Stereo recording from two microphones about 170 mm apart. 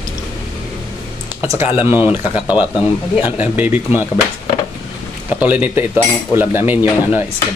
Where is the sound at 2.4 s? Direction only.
25° left (ahead or behind).